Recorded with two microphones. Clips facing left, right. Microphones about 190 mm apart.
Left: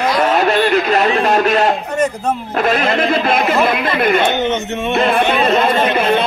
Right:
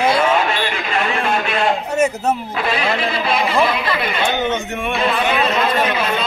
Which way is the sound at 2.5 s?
45° left (ahead or behind).